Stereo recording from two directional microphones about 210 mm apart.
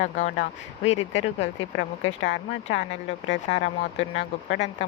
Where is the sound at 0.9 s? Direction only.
60° left (ahead or behind).